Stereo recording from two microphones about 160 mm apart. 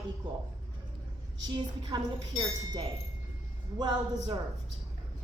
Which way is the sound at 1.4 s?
25° right (ahead or behind).